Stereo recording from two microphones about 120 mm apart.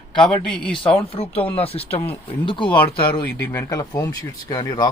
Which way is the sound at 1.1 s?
55° left (ahead or behind).